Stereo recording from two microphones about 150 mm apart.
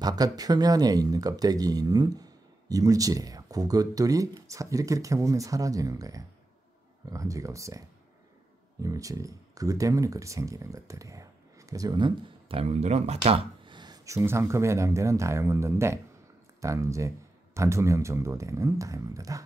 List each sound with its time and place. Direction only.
0.0 s speech: 25° right (ahead or behind)
8.8 s speech: 20° right (ahead or behind)